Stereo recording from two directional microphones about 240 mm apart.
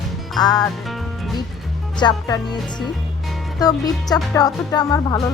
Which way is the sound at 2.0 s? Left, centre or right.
Centre.